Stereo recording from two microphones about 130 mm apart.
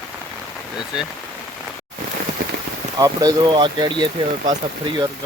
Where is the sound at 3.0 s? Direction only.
30° right (ahead or behind).